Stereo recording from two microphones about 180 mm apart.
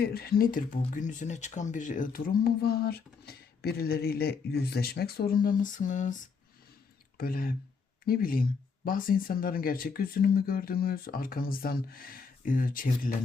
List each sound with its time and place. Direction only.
0.0 s speech: 60° left (ahead or behind)
7.2 s speech: 55° left (ahead or behind)